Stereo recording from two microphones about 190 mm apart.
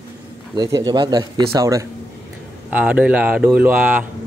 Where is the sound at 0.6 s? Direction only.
20° right (ahead or behind).